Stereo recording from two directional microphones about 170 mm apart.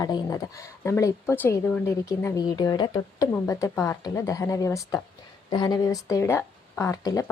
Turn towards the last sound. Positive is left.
turn(degrees=20)  # may be behind; listen again after turning